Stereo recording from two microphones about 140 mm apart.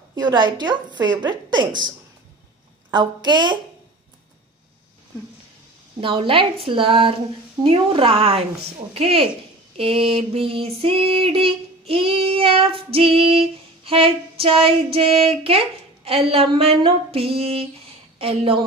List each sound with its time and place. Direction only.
0.1 s a woman's voice: 30° right (ahead or behind)
5.9 s a woman's voice: 40° right (ahead or behind)
7.6 s female singing: 40° right (ahead or behind)
18.2 s a woman's voice: 40° right (ahead or behind)